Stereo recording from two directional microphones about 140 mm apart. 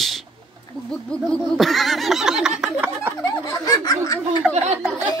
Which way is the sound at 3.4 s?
25° left (ahead or behind).